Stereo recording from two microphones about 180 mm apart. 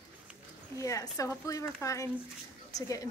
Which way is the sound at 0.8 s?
20° left (ahead or behind).